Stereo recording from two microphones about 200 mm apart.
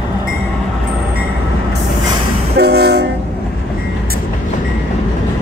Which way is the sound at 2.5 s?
55° right (ahead or behind).